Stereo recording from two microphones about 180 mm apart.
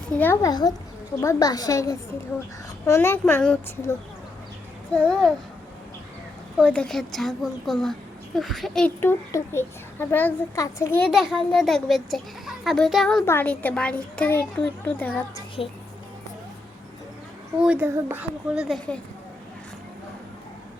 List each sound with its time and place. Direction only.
0.2 s a child's voice: 10° left (ahead or behind)
4.9 s a child's voice: 5° left (ahead or behind)
6.7 s a child's voice: 5° left (ahead or behind)
9.0 s a child's voice: 15° left (ahead or behind)
11.1 s a child's voice: centre (ahead or behind)
15.6 s a woman's voice: 30° left (ahead or behind)
17.6 s speech: 10° right (ahead or behind)